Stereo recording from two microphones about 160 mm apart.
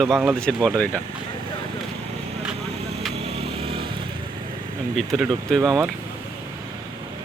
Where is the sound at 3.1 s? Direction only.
40° right (ahead or behind).